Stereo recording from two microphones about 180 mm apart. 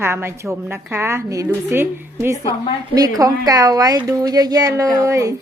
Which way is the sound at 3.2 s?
20° right (ahead or behind).